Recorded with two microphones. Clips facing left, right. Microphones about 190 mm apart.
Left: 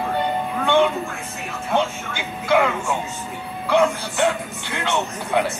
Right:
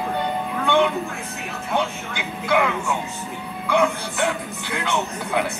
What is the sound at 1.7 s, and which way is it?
Music, 30° left (ahead or behind).